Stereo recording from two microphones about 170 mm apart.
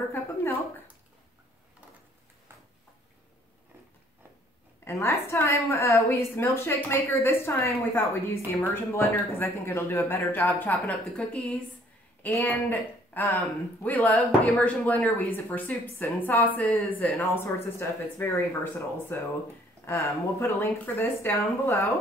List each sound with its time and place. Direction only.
0.1 s speech: 15° left (ahead or behind)
4.8 s speech: 15° left (ahead or behind)